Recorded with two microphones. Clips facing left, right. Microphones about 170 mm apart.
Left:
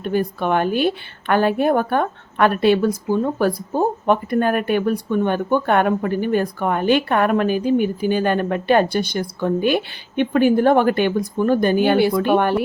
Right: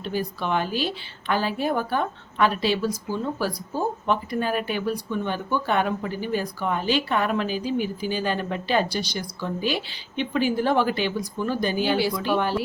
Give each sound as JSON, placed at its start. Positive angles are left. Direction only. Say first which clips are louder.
{"t": 0.0, "sound": "a woman's voice", "louder": "left 7 dB", "side_deg": 55}